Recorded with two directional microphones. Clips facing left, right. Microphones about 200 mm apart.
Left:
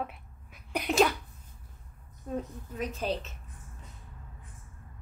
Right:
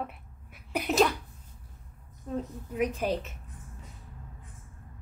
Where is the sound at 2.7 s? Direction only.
15° right (ahead or behind).